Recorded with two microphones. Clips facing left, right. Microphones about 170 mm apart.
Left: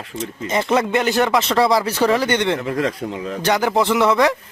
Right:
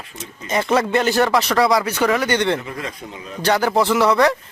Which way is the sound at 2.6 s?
70° left (ahead or behind).